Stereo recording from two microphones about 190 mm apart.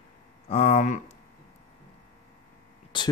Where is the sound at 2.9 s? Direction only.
25° left (ahead or behind).